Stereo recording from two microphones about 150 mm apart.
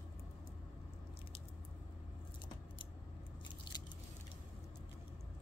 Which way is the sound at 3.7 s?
30° left (ahead or behind).